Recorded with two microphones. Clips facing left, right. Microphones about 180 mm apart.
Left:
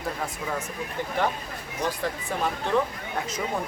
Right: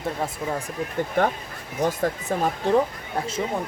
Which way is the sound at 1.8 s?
45° right (ahead or behind).